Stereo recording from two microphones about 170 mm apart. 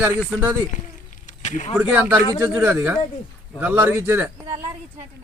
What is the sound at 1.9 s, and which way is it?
A man's voice, 10° right (ahead or behind).